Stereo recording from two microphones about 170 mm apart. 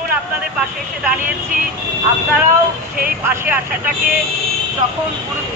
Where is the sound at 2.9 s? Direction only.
60° right (ahead or behind).